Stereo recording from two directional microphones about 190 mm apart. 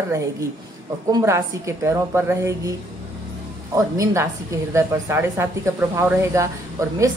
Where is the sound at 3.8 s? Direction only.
15° right (ahead or behind).